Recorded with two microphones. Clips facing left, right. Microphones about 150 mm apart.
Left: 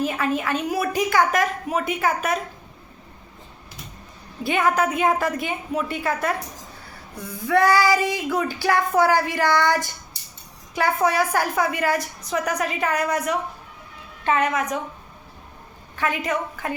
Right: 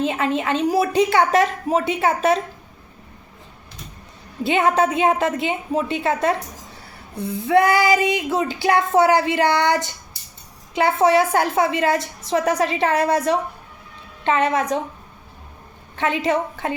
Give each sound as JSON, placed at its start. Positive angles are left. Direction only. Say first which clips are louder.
{"t": 0.0, "sound": "child singing", "louder": "right 2 dB", "side_deg": -25}
{"t": 4.4, "sound": "child singing", "louder": "right 3 dB", "side_deg": -25}
{"t": 16.0, "sound": "child singing", "louder": "right 4 dB", "side_deg": -25}